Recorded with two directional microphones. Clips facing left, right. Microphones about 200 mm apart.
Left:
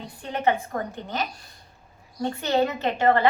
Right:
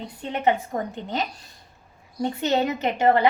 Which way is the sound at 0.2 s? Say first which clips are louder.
Right 1 dB; 20° right (ahead or behind).